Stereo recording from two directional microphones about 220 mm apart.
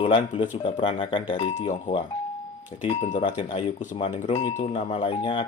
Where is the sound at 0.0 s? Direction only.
25° left (ahead or behind).